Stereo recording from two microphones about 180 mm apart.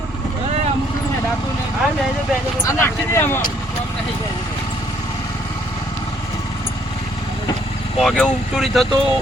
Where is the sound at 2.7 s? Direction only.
15° left (ahead or behind).